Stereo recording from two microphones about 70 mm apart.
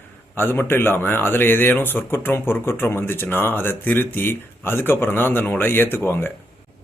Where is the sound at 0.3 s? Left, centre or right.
Left.